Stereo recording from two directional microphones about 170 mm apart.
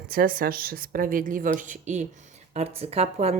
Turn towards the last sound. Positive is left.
turn(degrees=-40)  # may be behind; listen again after turning